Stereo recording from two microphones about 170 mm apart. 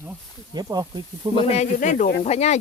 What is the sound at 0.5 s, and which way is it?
Speech, 25° right (ahead or behind).